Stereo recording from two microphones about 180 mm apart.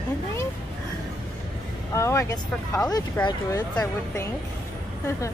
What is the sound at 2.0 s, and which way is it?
A woman's voice, 15° left (ahead or behind).